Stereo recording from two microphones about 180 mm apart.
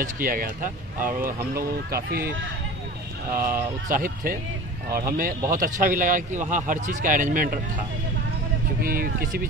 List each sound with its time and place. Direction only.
0.0 s speech: 50° right (ahead or behind)
8.8 s speech: 50° right (ahead or behind)